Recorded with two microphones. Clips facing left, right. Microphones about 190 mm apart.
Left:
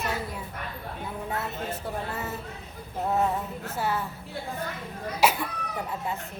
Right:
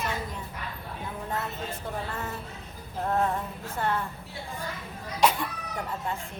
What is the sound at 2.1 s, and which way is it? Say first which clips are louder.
A woman's voice: left 1 dB; 5° left (ahead or behind).